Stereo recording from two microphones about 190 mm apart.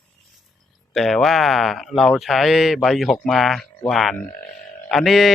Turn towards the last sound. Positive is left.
turn(degrees=0)  # may be behind; listen again after turning